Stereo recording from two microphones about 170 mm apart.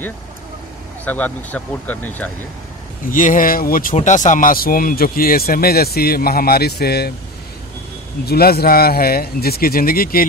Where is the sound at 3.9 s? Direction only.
45° left (ahead or behind); by 7.1 s 70° left (ahead or behind).